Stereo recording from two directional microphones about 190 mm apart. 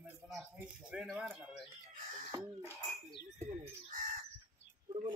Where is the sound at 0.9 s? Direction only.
5° right (ahead or behind).